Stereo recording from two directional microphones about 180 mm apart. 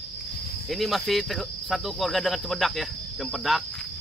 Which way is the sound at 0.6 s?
Centre (ahead or behind).